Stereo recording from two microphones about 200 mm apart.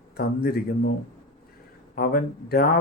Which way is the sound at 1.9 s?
50° left (ahead or behind).